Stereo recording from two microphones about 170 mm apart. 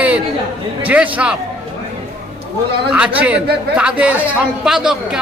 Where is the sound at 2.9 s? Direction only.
5° right (ahead or behind).